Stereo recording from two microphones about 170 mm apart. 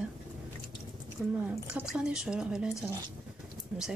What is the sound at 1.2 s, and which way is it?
Speech, 5° right (ahead or behind).